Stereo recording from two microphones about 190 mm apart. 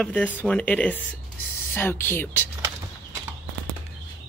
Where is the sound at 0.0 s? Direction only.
10° left (ahead or behind).